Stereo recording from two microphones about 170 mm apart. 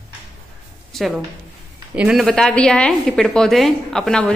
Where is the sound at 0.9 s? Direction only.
Centre (ahead or behind).